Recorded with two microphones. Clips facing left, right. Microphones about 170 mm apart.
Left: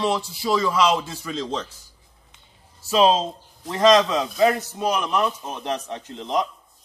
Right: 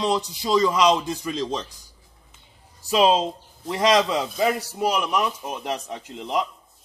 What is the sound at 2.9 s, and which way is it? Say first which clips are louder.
A man's voice: left 1 dB; 10° right (ahead or behind).